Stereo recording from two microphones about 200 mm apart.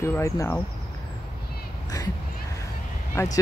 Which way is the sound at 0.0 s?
15° left (ahead or behind).